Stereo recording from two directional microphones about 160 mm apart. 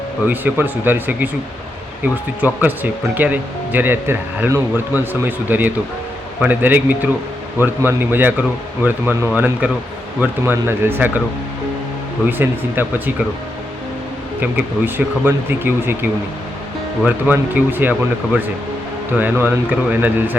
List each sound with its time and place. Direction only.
0.3 s speech: 10° right (ahead or behind)
2.4 s speech: 10° right (ahead or behind)
12.4 s speech: 10° right (ahead or behind)
14.4 s speech: 10° right (ahead or behind)
17.1 s speech: 10° right (ahead or behind)
19.1 s speech: 10° right (ahead or behind)